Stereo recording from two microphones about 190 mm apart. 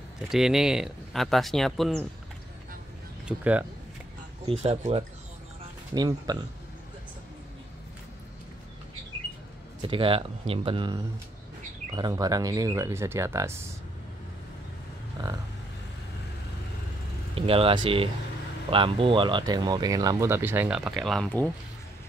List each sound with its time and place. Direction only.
0.3 s speech: centre (ahead or behind)
3.3 s speech: 10° right (ahead or behind)
4.5 s speech: 30° right (ahead or behind)
5.9 s speech: 20° right (ahead or behind)
9.8 s speech: 25° right (ahead or behind)
17.4 s speech: 30° right (ahead or behind); by 21.5 s 5° left (ahead or behind)